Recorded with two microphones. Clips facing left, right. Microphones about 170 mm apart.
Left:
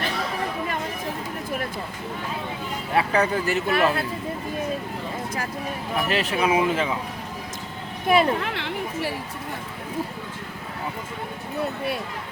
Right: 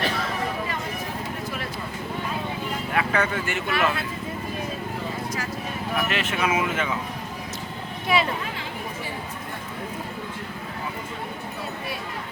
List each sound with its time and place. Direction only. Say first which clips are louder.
2.9 s speech: left 4 dB; 30° left (ahead or behind)
6.1 s speech: left 6 dB; 35° left (ahead or behind)
8.0 s speech: left 4 dB; 50° left (ahead or behind)
8.5 s chatter: left 4 dB; 75° left (ahead or behind)